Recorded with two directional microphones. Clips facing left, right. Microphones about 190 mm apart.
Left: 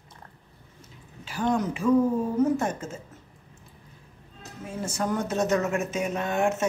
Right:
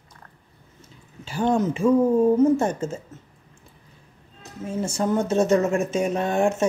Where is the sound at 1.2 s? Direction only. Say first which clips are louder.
Right 4 dB; 30° right (ahead or behind).